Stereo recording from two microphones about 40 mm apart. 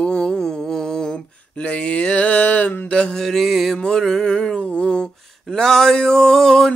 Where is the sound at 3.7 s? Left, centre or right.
Centre.